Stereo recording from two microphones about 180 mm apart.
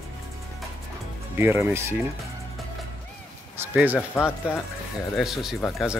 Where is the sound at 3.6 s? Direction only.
10° right (ahead or behind).